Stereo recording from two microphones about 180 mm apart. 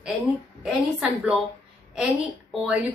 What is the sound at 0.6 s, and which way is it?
A woman's voice, 5° right (ahead or behind).